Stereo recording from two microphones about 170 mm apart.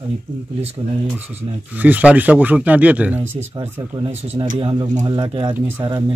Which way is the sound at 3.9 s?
30° right (ahead or behind).